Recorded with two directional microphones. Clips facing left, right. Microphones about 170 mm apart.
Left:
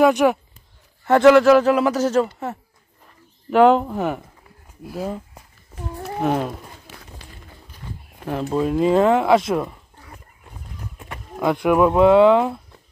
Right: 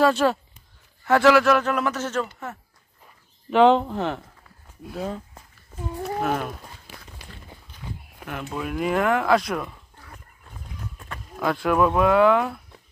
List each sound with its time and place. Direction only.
0.0 s speech: 15° left (ahead or behind); by 2.5 s 35° left (ahead or behind)
3.4 s speech: 10° left (ahead or behind)
6.1 s speech: 20° left (ahead or behind)
7.8 s a sound: 10° right (ahead or behind)
8.3 s speech: 35° left (ahead or behind)
10.0 s a sound: 10° left (ahead or behind)
11.0 s speech: 20° left (ahead or behind)